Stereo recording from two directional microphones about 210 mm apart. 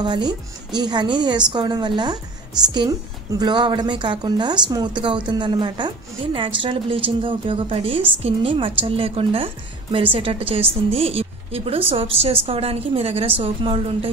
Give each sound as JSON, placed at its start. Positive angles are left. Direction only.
{"t": 0.0, "sound": "a woman's voice", "side_deg": -20}